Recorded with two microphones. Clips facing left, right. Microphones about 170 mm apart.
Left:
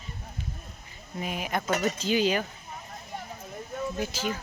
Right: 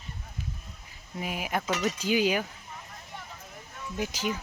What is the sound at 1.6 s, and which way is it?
Speech, 50° left (ahead or behind).